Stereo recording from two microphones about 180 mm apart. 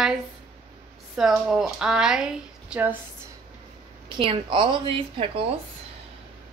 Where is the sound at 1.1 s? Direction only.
Centre (ahead or behind).